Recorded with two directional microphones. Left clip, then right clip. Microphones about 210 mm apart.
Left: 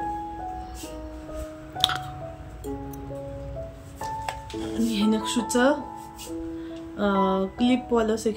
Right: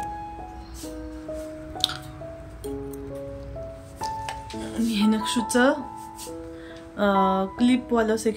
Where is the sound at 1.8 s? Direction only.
15° left (ahead or behind).